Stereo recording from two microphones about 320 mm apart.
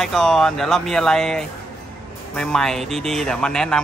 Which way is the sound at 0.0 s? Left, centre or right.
Centre.